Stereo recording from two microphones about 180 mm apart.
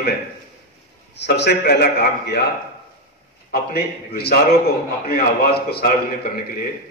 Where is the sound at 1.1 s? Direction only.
70° left (ahead or behind).